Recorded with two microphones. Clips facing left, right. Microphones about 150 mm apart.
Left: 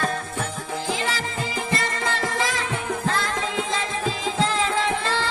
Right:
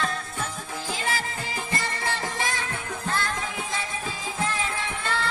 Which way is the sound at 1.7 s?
90° left.